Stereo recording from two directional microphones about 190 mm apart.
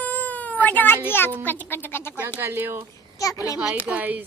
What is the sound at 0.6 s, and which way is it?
A child's voice, 10° left (ahead or behind).